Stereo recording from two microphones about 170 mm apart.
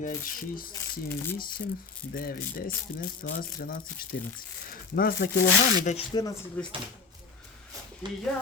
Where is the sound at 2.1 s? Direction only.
60° left (ahead or behind).